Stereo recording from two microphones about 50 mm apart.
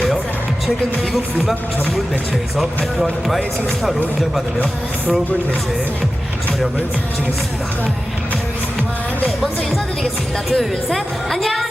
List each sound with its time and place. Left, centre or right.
2.6 s speech: centre
10.5 s a woman's voice: centre